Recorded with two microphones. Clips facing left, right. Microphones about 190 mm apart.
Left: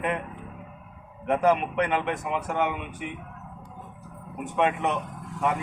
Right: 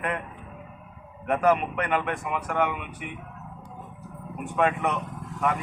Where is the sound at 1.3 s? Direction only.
20° left (ahead or behind).